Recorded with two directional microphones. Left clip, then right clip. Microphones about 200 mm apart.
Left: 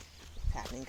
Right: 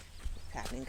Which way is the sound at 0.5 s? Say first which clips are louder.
Even; 10° left (ahead or behind).